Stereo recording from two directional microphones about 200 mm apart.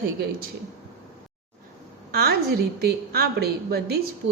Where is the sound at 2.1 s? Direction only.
50° right (ahead or behind).